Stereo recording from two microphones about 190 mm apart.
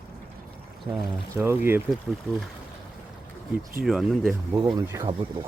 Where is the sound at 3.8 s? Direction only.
Centre (ahead or behind).